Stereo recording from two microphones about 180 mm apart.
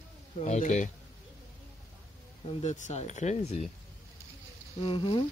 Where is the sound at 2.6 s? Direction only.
40° left (ahead or behind).